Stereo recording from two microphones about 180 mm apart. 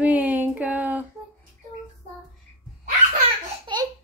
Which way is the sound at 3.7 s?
25° right (ahead or behind).